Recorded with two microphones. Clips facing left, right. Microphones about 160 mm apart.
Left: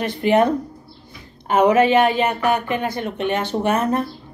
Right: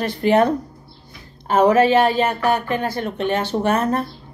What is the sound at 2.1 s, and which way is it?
Speech, 10° left (ahead or behind).